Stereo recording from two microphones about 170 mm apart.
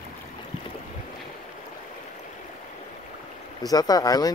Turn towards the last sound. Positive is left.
turn(degrees=20)  # may be behind; listen again after turning